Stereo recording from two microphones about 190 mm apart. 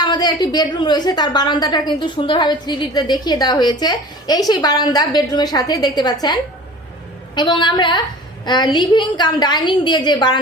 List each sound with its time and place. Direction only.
0.0 s a woman's voice: 20° left (ahead or behind)